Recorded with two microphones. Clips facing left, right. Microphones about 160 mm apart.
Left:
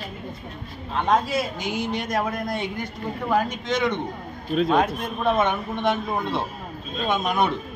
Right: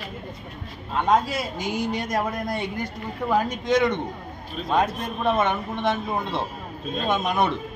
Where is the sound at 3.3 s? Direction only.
10° right (ahead or behind).